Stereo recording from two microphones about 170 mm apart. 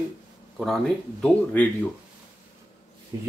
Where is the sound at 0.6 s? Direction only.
5° left (ahead or behind).